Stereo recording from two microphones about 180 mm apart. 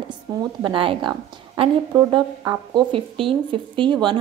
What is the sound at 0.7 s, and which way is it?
A woman's voice, 30° right (ahead or behind).